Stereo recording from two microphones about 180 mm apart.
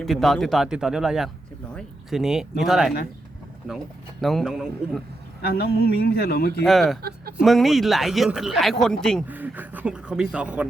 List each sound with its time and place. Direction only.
0.0 s speech: centre (ahead or behind)
4.2 s speech: centre (ahead or behind)
5.4 s speech: 60° left (ahead or behind)
6.6 s speech: centre (ahead or behind)
9.2 s speech: 10° right (ahead or behind)